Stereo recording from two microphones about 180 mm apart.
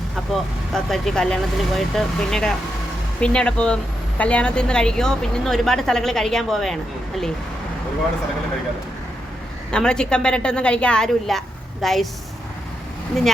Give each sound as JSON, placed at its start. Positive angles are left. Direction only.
{"t": 0.7, "sound": "a woman's voice", "side_deg": 5}
{"t": 9.7, "sound": "a woman's voice", "side_deg": 5}